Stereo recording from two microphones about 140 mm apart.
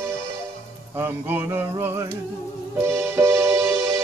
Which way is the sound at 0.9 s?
15° right (ahead or behind).